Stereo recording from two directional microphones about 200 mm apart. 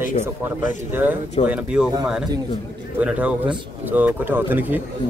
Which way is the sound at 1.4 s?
30° left (ahead or behind).